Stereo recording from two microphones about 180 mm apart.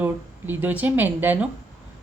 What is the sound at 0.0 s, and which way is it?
A woman's voice, 10° right (ahead or behind).